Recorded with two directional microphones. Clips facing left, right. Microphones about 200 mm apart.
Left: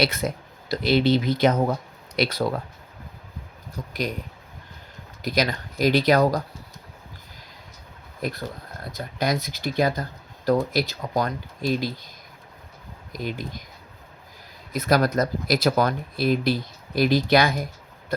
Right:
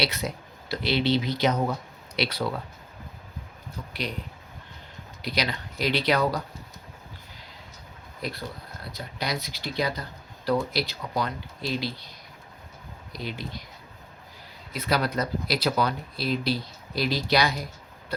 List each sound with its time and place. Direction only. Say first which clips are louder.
0.0 s speech: left 5 dB; 50° left (ahead or behind)
3.8 s speech: left 5 dB; 45° left (ahead or behind)
5.2 s speech: left 5 dB; 45° left (ahead or behind)
8.2 s speech: left 4 dB; 50° left (ahead or behind)
13.1 s speech: left 4 dB; 45° left (ahead or behind)
14.7 s speech: left 6 dB; 45° left (ahead or behind)